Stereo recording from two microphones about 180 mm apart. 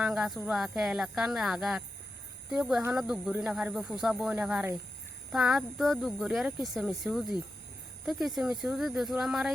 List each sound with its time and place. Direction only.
0.0 s speech: centre (ahead or behind)